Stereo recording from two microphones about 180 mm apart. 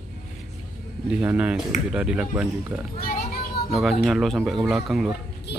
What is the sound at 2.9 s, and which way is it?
Children playing, 55° left (ahead or behind).